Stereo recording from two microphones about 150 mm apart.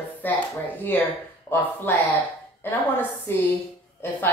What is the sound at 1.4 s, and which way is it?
A woman's voice, 10° left (ahead or behind).